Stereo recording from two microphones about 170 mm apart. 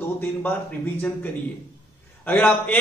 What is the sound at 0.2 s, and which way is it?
A man's voice, 10° left (ahead or behind).